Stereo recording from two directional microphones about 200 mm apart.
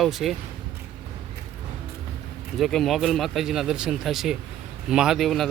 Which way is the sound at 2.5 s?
Centre (ahead or behind).